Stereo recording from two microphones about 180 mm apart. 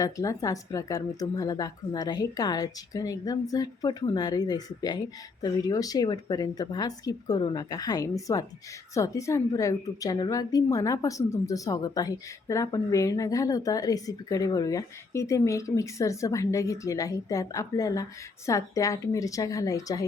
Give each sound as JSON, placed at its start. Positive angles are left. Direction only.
{"t": 0.0, "sound": "a woman's voice", "side_deg": 20}